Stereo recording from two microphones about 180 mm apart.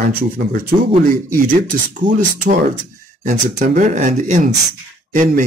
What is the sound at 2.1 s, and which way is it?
Speech, 50° right (ahead or behind).